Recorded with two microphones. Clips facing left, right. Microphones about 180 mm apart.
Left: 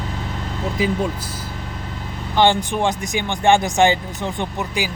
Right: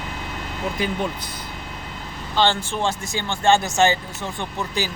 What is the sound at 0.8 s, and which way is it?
Speech, 5° left (ahead or behind).